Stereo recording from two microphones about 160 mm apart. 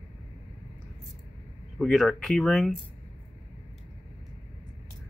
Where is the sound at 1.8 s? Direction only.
Centre (ahead or behind).